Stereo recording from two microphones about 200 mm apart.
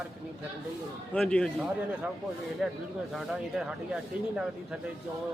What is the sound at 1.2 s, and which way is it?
Speech, 5° left (ahead or behind).